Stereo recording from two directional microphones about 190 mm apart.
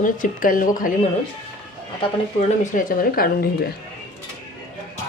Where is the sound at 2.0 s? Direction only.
40° left (ahead or behind).